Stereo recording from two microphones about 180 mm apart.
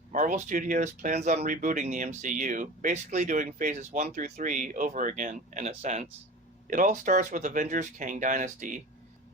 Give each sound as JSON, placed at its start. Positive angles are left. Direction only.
{"t": 0.1, "sound": "speech", "side_deg": -45}